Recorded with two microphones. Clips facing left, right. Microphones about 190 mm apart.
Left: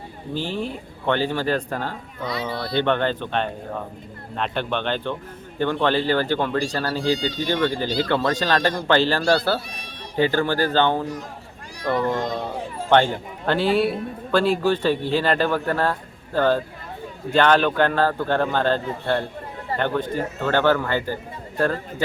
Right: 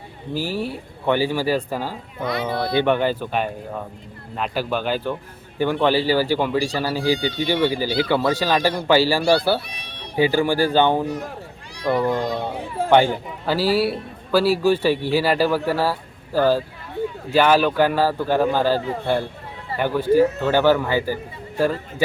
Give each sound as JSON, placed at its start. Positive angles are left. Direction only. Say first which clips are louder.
{"t": 0.3, "sound": "speech", "louder": "right 2 dB", "side_deg": -5}
{"t": 2.2, "sound": "speech", "louder": "right 4 dB", "side_deg": -55}
{"t": 2.7, "sound": "speech", "louder": "right 1 dB", "side_deg": -10}
{"t": 9.6, "sound": "a sound", "louder": "even", "side_deg": -65}
{"t": 10.2, "sound": "speech", "louder": "right 2 dB", "side_deg": -10}